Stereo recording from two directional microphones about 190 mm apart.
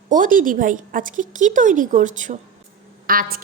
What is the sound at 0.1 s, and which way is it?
A woman's voice, 45° right (ahead or behind).